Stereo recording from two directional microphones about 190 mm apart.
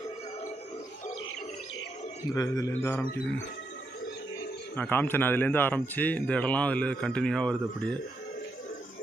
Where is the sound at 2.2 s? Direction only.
20° left (ahead or behind).